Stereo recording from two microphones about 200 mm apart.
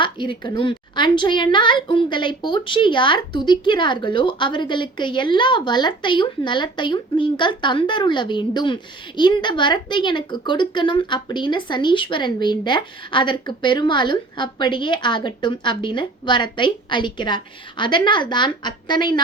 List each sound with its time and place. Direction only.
0.0 s a woman's voice: 25° left (ahead or behind)